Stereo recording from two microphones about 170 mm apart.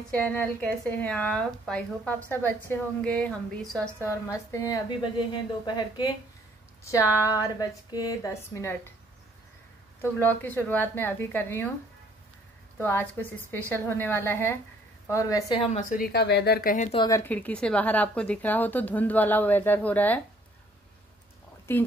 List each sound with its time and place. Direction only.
0.1 s a woman's voice: 5° left (ahead or behind)
10.1 s a woman's voice: 10° left (ahead or behind)
12.7 s a woman's voice: 10° left (ahead or behind)
15.7 s speech: 55° left (ahead or behind)
16.7 s speech: 45° left (ahead or behind)
17.0 s a woman's voice: 15° left (ahead or behind)
21.7 s a woman's voice: 15° left (ahead or behind)